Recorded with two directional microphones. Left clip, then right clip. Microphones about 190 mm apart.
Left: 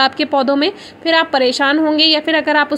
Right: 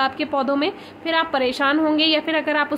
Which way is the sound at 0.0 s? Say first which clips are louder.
Left 7 dB; 30° left (ahead or behind).